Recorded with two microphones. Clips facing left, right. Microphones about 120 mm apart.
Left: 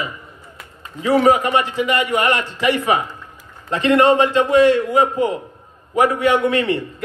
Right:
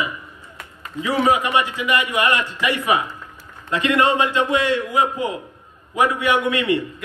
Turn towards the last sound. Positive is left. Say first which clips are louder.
# left 4 dB
turn(degrees=30)  # may be behind; listen again after turning